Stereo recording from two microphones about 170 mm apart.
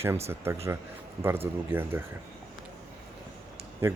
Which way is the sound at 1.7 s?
15° right (ahead or behind).